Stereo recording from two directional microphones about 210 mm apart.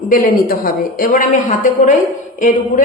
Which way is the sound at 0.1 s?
40° left (ahead or behind).